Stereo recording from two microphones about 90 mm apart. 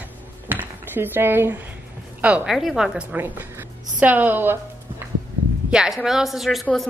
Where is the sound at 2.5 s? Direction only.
5° right (ahead or behind).